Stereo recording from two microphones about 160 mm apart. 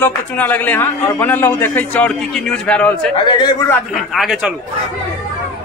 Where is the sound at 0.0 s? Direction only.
10° left (ahead or behind).